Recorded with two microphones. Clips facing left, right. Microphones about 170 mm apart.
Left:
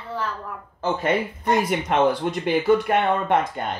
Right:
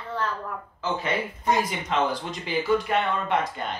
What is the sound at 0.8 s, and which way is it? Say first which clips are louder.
Speech: left 5 dB; 55° left (ahead or behind).